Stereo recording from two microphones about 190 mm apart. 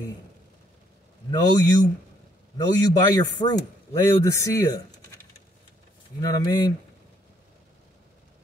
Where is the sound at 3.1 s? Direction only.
20° left (ahead or behind).